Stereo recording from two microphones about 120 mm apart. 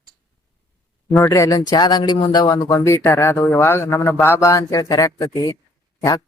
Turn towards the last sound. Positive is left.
turn(degrees=30)  # may be behind; listen again after turning